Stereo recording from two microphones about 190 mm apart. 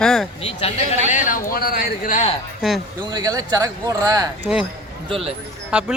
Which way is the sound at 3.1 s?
20° right (ahead or behind).